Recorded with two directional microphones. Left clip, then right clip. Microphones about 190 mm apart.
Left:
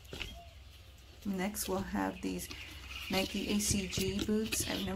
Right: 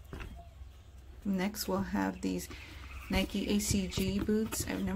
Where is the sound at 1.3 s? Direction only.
15° right (ahead or behind).